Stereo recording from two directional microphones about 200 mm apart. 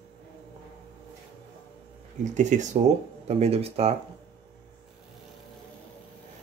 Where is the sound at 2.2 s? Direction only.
35° right (ahead or behind).